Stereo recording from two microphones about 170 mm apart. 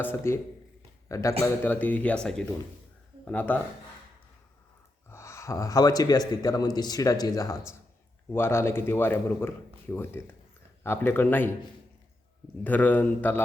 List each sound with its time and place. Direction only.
0.0 s a man's voice: 15° left (ahead or behind)
5.0 s a man's voice: 15° left (ahead or behind)
12.6 s speech: 10° left (ahead or behind)